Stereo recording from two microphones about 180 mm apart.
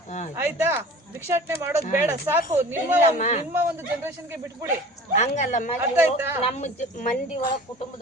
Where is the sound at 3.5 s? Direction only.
10° right (ahead or behind).